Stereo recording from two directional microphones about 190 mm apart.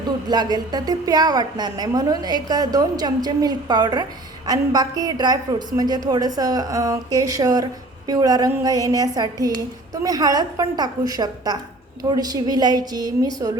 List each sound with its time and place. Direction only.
0.3 s a woman's voice: 20° right (ahead or behind)